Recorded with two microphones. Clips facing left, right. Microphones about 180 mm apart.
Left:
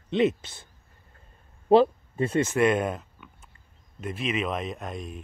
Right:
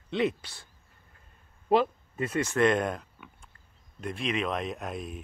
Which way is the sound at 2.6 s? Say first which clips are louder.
Right 1 dB; 5° left (ahead or behind).